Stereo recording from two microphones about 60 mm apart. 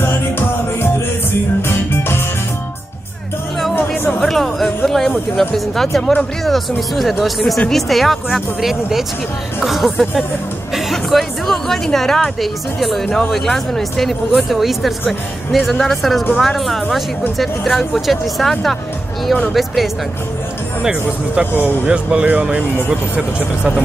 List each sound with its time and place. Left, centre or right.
0.0 s music: left
3.7 s music: left
4.2 s a sound: centre
5.8 s a woman's voice: centre
20.8 s speech: centre